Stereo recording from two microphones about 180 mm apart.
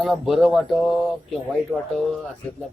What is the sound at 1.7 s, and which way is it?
Speech, 20° right (ahead or behind).